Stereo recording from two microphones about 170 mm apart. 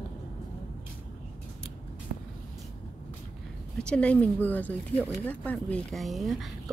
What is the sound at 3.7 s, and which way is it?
A woman's voice, 5° left (ahead or behind).